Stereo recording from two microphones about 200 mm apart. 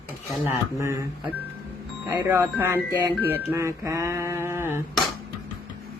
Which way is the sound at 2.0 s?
15° right (ahead or behind).